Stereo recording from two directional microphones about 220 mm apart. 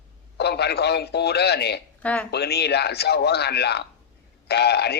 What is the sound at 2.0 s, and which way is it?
Speech, 5° left (ahead or behind).